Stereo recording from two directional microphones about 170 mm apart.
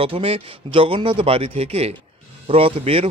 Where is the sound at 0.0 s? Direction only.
35° right (ahead or behind).